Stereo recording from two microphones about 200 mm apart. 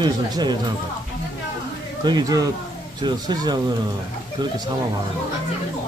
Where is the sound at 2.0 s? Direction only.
20° right (ahead or behind).